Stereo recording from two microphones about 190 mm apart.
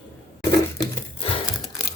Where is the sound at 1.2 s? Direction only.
30° left (ahead or behind).